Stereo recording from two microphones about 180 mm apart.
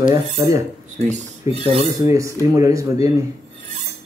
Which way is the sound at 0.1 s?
20° right (ahead or behind).